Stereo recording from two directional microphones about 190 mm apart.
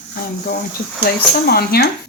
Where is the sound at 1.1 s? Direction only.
55° left (ahead or behind).